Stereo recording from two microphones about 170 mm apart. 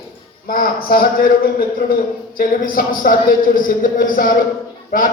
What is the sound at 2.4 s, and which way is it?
A man's voice, 55° left (ahead or behind).